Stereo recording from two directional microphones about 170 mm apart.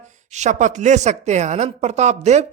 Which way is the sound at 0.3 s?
45° right (ahead or behind).